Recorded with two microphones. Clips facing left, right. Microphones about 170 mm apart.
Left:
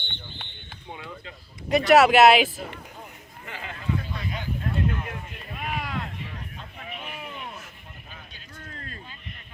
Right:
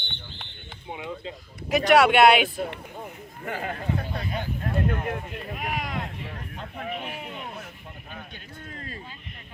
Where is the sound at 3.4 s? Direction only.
50° right (ahead or behind).